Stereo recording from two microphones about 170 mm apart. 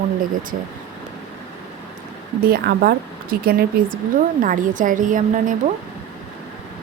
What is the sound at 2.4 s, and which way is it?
A woman's voice, 65° right (ahead or behind).